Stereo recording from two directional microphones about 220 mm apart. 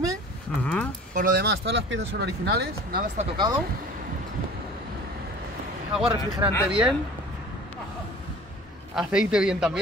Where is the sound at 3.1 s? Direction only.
30° right (ahead or behind).